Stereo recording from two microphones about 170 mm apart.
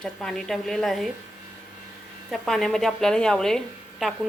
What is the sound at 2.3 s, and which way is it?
Speech, centre (ahead or behind).